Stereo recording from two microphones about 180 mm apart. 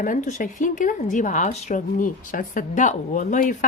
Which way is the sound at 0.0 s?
45° left (ahead or behind).